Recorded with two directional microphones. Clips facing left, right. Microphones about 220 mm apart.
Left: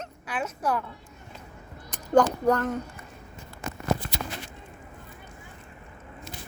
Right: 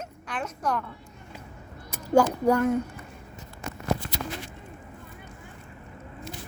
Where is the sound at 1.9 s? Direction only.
10° right (ahead or behind).